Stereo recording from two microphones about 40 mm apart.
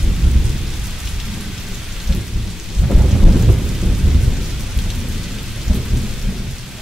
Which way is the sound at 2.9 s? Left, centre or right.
Centre.